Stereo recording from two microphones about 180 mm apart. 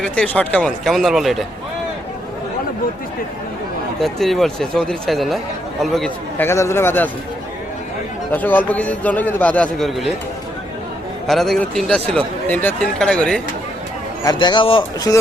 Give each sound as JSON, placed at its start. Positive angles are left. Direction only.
{"t": 0.0, "sound": "speech", "side_deg": 5}
{"t": 4.0, "sound": "speech", "side_deg": 0}
{"t": 6.5, "sound": "a man's voice", "side_deg": 15}
{"t": 8.3, "sound": "a man's voice", "side_deg": 10}
{"t": 11.3, "sound": "speech", "side_deg": 0}
{"t": 14.3, "sound": "speech", "side_deg": 25}